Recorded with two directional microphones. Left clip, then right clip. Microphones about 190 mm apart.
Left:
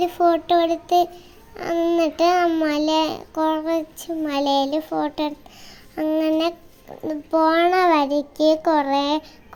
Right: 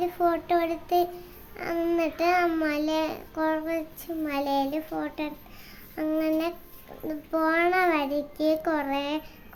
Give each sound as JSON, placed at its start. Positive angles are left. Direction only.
{"t": 0.0, "sound": "a child's voice", "side_deg": 25}